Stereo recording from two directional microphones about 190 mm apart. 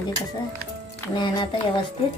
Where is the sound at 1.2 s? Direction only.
25° left (ahead or behind).